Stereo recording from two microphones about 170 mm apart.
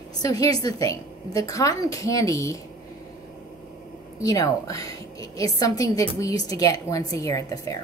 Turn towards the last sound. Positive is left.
turn(degrees=20)  # may be behind; listen again after turning